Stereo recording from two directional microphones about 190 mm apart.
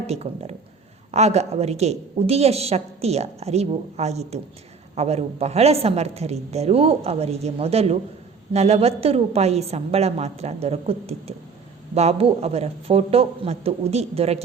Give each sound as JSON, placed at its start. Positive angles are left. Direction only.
{"t": 0.1, "sound": "a woman's voice", "side_deg": -35}